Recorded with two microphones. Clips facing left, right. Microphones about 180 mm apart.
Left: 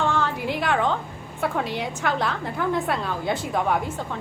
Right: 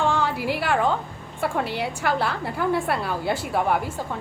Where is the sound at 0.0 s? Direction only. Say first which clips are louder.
Right 1 dB; 15° right (ahead or behind).